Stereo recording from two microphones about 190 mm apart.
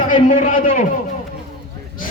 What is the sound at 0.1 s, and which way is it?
Speech, 45° left (ahead or behind).